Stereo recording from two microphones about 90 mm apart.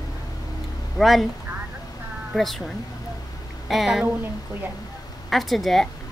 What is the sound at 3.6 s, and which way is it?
Speech, 5° right (ahead or behind).